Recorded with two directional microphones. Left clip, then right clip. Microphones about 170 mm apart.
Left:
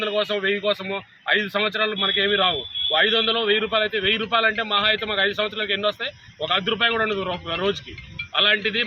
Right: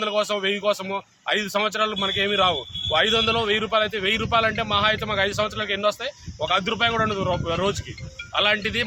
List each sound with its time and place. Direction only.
0.0 s speech: 20° right (ahead or behind)